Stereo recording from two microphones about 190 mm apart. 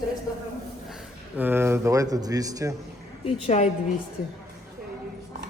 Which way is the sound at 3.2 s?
35° left (ahead or behind).